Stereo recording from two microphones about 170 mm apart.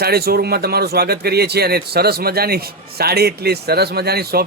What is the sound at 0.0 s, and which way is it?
Speech, 65° right (ahead or behind).